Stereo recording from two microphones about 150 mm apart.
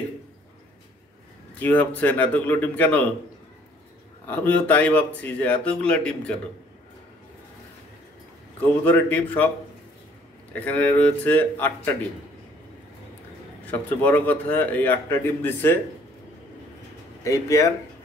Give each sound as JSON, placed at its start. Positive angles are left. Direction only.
{"t": 1.6, "sound": "a man's voice", "side_deg": 10}
{"t": 4.3, "sound": "a man's voice", "side_deg": 10}
{"t": 8.8, "sound": "a man's voice", "side_deg": 10}
{"t": 10.5, "sound": "a man's voice", "side_deg": 10}
{"t": 13.7, "sound": "a man's voice", "side_deg": 10}
{"t": 17.2, "sound": "speech", "side_deg": 20}